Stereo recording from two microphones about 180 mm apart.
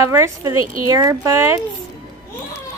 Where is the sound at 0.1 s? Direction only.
15° right (ahead or behind).